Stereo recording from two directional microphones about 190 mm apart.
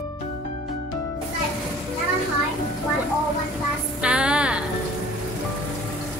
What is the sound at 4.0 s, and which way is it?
Music, 5° right (ahead or behind).